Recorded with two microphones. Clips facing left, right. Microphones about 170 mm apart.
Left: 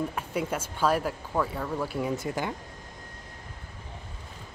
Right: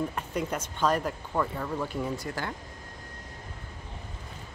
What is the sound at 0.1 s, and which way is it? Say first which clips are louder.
Speech: left 1 dB; 5° left (ahead or behind).